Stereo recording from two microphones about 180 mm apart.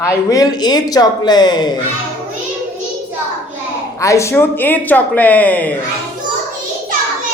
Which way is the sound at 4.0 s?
15° left (ahead or behind).